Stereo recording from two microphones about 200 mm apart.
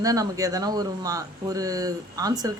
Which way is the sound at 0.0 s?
15° right (ahead or behind).